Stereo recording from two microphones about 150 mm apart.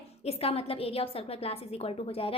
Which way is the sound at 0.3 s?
40° left (ahead or behind).